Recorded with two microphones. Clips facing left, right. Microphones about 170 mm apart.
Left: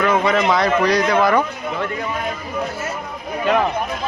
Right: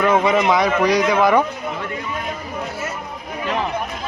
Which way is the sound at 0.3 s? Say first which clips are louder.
Even; 15° right (ahead or behind).